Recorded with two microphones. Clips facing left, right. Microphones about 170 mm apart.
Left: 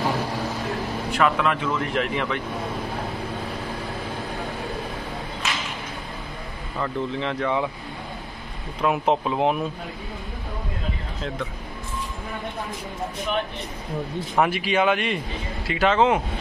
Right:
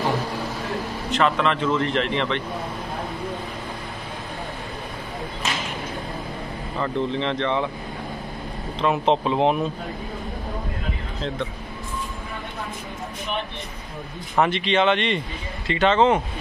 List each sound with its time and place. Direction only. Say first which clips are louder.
1.1 s a man's voice: right 1 dB; 10° left (ahead or behind)
6.8 s speech: right 2 dB; 5° left (ahead or behind)
8.8 s speech: right 1 dB; 5° left (ahead or behind)
14.3 s a man's voice: right 1 dB; 5° left (ahead or behind)